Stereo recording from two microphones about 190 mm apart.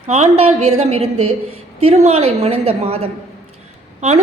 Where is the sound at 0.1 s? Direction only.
35° right (ahead or behind).